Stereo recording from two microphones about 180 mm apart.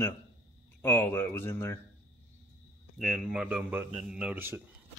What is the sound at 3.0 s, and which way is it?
Speech, centre (ahead or behind).